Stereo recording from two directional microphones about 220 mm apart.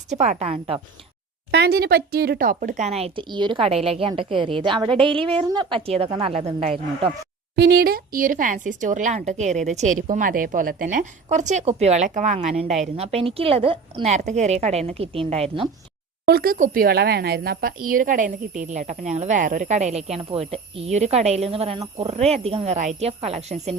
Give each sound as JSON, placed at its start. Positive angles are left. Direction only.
{"t": 0.1, "sound": "speech", "side_deg": -30}
{"t": 1.5, "sound": "speech", "side_deg": -50}
{"t": 7.5, "sound": "speech", "side_deg": -50}
{"t": 16.2, "sound": "speech", "side_deg": -45}